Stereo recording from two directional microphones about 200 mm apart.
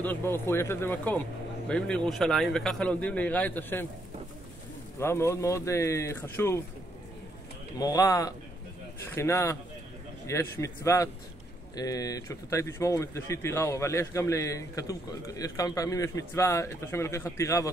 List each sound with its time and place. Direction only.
0.0 s a man's voice: 10° left (ahead or behind)
4.9 s speech: 10° left (ahead or behind)
7.8 s speech: 20° left (ahead or behind)